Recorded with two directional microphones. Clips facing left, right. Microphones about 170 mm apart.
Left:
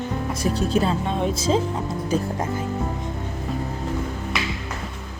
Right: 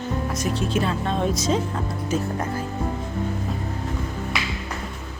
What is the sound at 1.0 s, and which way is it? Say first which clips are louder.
Speech: even; 15° left (ahead or behind).